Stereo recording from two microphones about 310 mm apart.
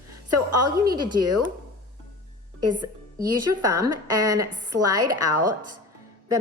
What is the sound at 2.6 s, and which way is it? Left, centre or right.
Speech, right.